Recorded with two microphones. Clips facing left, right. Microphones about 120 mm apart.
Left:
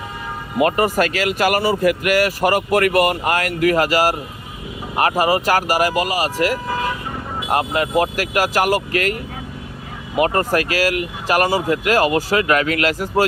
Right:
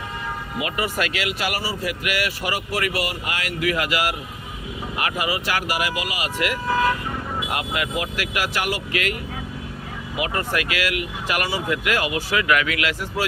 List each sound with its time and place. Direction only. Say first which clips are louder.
0.6 s speech: left 10 dB; 45° left (ahead or behind)
10.2 s speech: left 8 dB; 45° left (ahead or behind)